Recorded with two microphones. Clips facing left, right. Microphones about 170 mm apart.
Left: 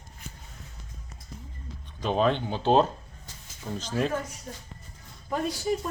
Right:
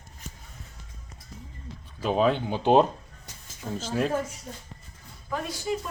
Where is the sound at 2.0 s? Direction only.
5° right (ahead or behind).